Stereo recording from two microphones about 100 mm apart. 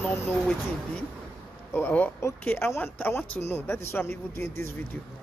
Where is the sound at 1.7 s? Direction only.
20° left (ahead or behind).